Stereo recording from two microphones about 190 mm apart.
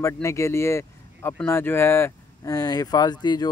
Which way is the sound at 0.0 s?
15° left (ahead or behind).